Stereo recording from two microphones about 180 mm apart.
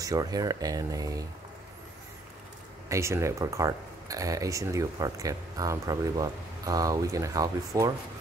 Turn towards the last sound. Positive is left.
turn(degrees=-20)  # may be behind; listen again after turning